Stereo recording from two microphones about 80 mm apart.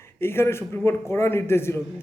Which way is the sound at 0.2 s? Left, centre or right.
Left.